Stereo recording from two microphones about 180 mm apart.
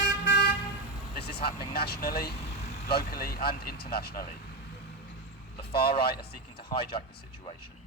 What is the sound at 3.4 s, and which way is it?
Speech, 60° left (ahead or behind).